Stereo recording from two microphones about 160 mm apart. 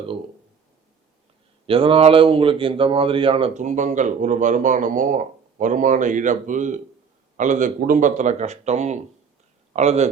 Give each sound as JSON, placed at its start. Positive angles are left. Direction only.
{"t": 1.6, "sound": "speech", "side_deg": -35}
{"t": 3.5, "sound": "speech", "side_deg": -50}